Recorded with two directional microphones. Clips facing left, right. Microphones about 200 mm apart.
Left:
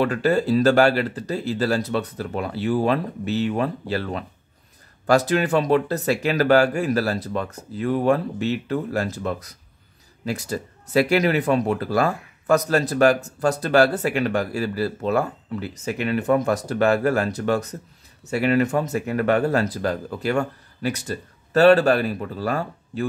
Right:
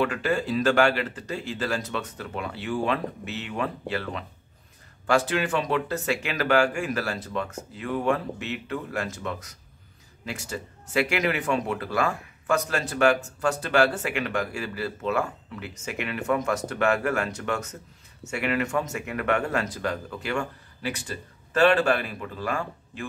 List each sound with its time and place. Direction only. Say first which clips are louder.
0.0 s speech: left 5 dB; 35° left (ahead or behind)